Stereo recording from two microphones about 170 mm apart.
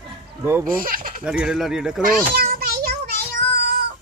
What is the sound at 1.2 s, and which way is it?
Speech, 5° right (ahead or behind).